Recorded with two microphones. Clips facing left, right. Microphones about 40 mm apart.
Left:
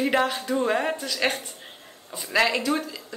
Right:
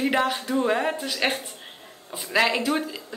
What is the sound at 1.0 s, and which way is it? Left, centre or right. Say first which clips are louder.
A woman's voice: even; centre.